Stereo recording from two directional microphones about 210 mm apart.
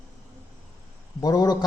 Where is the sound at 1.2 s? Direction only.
20° left (ahead or behind).